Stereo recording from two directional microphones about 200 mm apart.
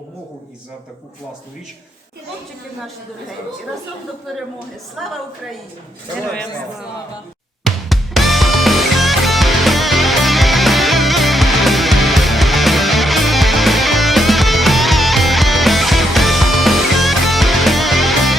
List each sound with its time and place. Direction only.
5.0 s a woman's voice: centre (ahead or behind)
7.6 s music: centre (ahead or behind)